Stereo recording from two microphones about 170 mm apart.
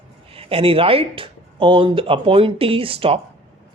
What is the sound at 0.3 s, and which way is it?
Speech, 35° right (ahead or behind).